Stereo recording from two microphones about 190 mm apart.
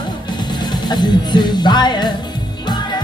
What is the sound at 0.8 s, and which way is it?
Music, 20° left (ahead or behind).